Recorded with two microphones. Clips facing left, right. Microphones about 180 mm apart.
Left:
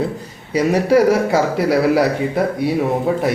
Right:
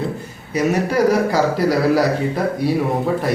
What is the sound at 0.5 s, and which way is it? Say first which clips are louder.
Speech: left 4 dB; 30° left (ahead or behind).